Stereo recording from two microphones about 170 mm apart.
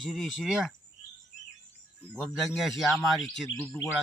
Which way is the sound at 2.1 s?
Centre (ahead or behind).